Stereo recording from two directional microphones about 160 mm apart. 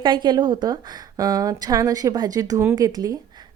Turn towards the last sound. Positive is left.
turn(degrees=-20)  # may be behind; listen again after turning